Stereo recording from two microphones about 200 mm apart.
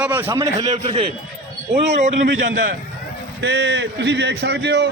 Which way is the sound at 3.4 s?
60° right (ahead or behind).